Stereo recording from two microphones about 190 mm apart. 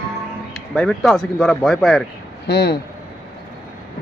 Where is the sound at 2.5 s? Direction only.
60° left (ahead or behind).